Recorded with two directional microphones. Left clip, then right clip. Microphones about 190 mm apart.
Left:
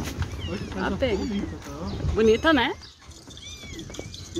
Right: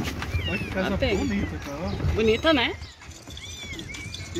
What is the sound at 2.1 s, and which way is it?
Speech, 15° left (ahead or behind).